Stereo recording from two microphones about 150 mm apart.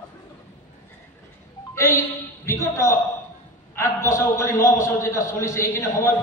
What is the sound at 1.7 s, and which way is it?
A woman's voice, 20° left (ahead or behind).